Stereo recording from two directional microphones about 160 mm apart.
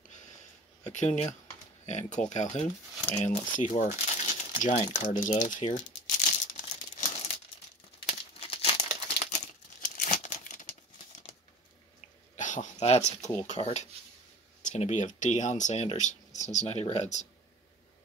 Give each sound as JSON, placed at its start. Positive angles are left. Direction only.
{"t": 0.8, "sound": "speech", "side_deg": 45}
{"t": 4.9, "sound": "crumpling", "side_deg": 50}
{"t": 8.1, "sound": "crumpling", "side_deg": 40}
{"t": 9.3, "sound": "crumpling", "side_deg": 50}
{"t": 12.4, "sound": "speech", "side_deg": 50}